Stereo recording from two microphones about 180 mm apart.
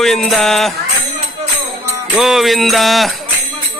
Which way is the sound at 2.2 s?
Centre (ahead or behind).